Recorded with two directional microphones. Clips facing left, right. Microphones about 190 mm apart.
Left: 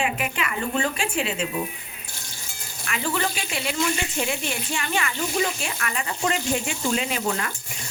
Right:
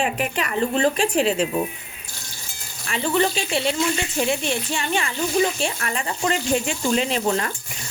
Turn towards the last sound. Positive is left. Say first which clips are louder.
# right 5 dB
turn(degrees=-30)  # may be behind; listen again after turning